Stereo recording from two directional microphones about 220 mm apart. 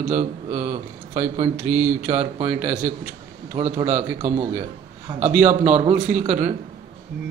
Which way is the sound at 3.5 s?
30° right (ahead or behind).